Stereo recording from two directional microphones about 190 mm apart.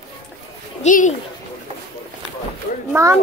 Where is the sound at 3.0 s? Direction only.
15° right (ahead or behind).